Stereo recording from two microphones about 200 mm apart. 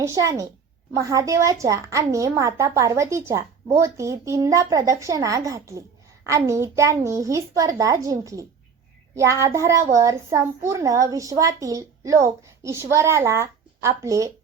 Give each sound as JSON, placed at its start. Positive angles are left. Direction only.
{"t": 0.0, "sound": "a woman's voice", "side_deg": -15}